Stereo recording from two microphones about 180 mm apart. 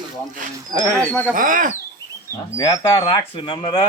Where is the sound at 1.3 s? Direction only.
45° right (ahead or behind).